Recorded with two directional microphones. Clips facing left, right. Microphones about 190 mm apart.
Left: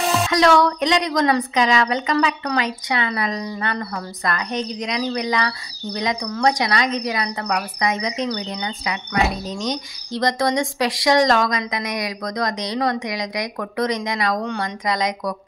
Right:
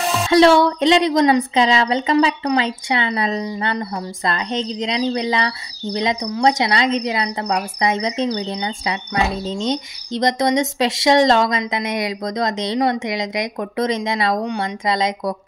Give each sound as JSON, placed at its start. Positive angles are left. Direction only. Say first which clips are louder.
{"t": 0.3, "sound": "speech", "louder": "right 6 dB", "side_deg": -30}